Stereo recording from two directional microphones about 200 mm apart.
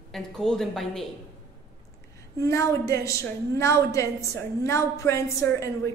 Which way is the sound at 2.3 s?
15° left (ahead or behind).